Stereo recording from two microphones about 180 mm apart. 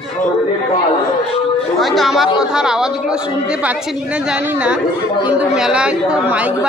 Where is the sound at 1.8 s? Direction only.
Centre (ahead or behind).